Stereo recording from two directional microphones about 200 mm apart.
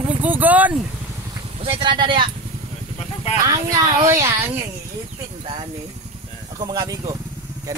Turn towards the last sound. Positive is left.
turn(degrees=-20)  # may be behind; listen again after turning